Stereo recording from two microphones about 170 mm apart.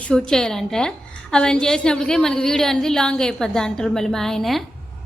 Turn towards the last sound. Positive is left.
turn(degrees=0)  # may be behind; listen again after turning